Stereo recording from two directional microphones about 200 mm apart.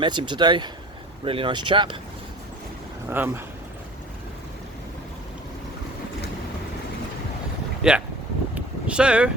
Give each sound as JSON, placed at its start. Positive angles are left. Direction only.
{"t": 0.0, "sound": "speech", "side_deg": -25}
{"t": 3.1, "sound": "speech", "side_deg": -10}
{"t": 7.8, "sound": "speech", "side_deg": -5}
{"t": 8.5, "sound": "a sound", "side_deg": -5}